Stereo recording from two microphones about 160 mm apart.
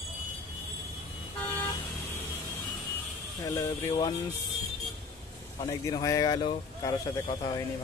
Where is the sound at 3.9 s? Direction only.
30° left (ahead or behind).